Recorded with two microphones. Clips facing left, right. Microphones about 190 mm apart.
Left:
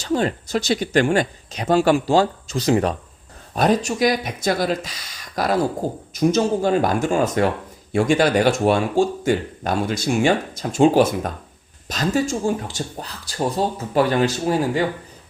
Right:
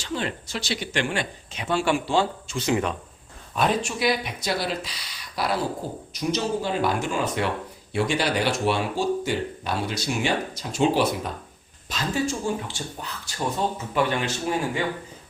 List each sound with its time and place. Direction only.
0.0 s speech: 40° left (ahead or behind)